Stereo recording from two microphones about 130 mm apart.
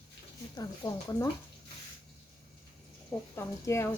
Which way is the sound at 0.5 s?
25° left (ahead or behind).